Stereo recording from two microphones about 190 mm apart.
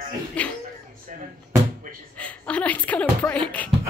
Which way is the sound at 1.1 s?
40° right (ahead or behind).